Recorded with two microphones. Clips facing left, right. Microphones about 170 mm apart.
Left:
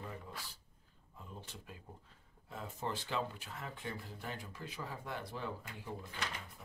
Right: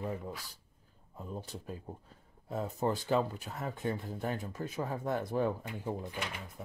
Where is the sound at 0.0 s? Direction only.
50° right (ahead or behind).